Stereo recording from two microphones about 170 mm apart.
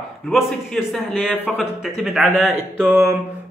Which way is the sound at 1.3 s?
10° left (ahead or behind).